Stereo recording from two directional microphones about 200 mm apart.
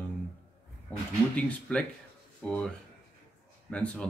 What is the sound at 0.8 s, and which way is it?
Speech, 5° left (ahead or behind).